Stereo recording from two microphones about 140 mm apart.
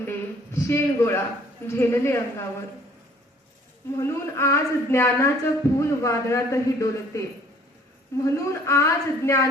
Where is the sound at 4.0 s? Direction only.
20° left (ahead or behind).